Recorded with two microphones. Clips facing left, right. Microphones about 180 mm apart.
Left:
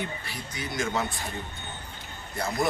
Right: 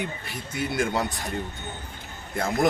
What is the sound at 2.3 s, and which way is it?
Speech, 50° right (ahead or behind).